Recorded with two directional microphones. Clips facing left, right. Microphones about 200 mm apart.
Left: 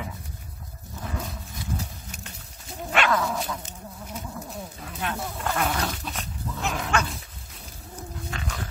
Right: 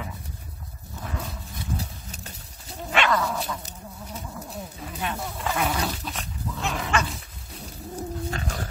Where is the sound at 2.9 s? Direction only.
Centre (ahead or behind).